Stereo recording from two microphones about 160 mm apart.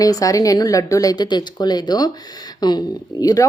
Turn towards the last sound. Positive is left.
turn(degrees=25)  # may be behind; listen again after turning